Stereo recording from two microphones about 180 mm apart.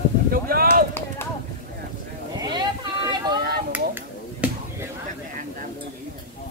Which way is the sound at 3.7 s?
10° right (ahead or behind).